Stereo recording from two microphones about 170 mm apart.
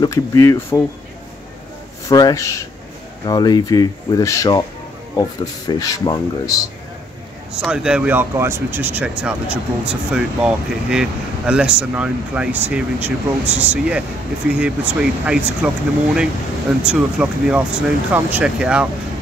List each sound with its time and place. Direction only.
0.0 s speech: 20° left (ahead or behind)
2.0 s speech: 20° left (ahead or behind)
7.5 s speech: 5° right (ahead or behind)
16.8 s speech: 5° right (ahead or behind)